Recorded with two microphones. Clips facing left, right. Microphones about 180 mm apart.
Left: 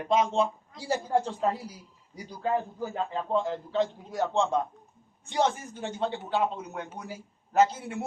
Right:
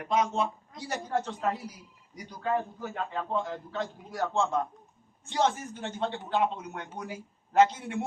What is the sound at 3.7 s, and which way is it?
A man's voice, 20° left (ahead or behind).